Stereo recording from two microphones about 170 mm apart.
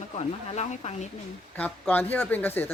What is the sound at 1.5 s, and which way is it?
Speech, 10° left (ahead or behind).